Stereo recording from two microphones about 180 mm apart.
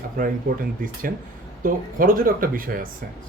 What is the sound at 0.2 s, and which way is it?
Speech, 50° right (ahead or behind).